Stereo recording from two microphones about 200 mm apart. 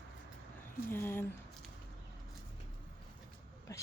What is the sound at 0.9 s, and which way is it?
Speech, 10° left (ahead or behind).